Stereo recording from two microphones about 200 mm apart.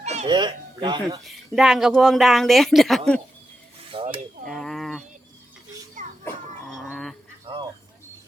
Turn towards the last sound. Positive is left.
turn(degrees=-25)  # may be behind; listen again after turning